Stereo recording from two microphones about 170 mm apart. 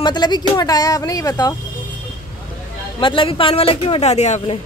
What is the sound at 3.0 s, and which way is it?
Speech, 30° left (ahead or behind).